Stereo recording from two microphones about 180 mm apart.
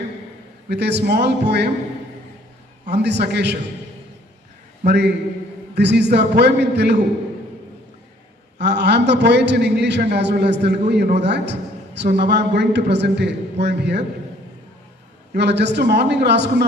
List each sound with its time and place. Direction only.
0.7 s a man's voice: 70° right (ahead or behind)
2.8 s a man's voice: 70° right (ahead or behind)
4.9 s a man's voice: 70° right (ahead or behind)
8.5 s a man's voice: 70° right (ahead or behind)
15.3 s a man's voice: 70° right (ahead or behind)